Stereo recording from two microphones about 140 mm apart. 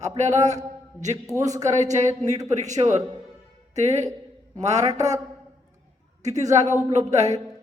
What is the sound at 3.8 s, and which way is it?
A man's voice, 55° right (ahead or behind).